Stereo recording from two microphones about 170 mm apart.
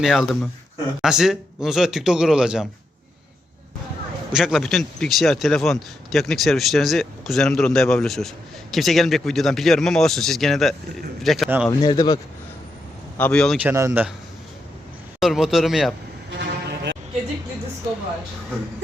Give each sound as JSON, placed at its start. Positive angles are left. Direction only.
{"t": 0.0, "sound": "speech", "side_deg": 0}
{"t": 4.3, "sound": "speech", "side_deg": -5}
{"t": 11.4, "sound": "speech", "side_deg": -10}
{"t": 11.8, "sound": "speech", "side_deg": 25}
{"t": 13.1, "sound": "speech", "side_deg": 5}
{"t": 13.6, "sound": "speech", "side_deg": -15}
{"t": 15.2, "sound": "speech", "side_deg": 0}
{"t": 16.4, "sound": "a sound", "side_deg": -90}